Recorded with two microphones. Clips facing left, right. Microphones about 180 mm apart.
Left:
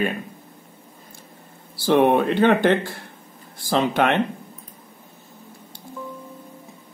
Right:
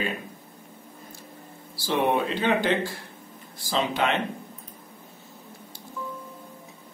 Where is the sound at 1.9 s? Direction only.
60° left (ahead or behind).